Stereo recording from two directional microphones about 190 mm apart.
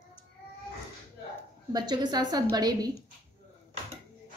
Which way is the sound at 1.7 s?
20° right (ahead or behind).